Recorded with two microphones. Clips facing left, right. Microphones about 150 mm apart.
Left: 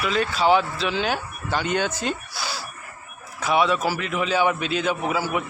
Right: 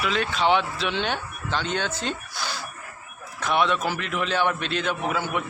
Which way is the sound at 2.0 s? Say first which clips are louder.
Left 2 dB; 5° left (ahead or behind).